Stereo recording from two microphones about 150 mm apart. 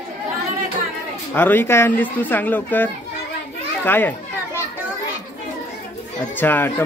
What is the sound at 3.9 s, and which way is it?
Speech, 10° left (ahead or behind).